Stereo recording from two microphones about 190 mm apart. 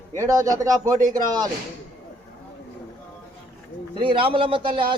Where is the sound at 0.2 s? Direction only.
15° right (ahead or behind).